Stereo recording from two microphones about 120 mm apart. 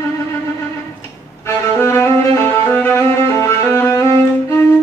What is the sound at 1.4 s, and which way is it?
Violin, 20° left (ahead or behind).